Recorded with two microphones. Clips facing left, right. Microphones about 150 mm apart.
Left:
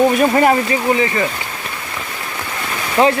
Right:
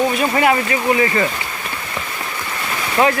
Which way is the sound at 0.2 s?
40° left (ahead or behind).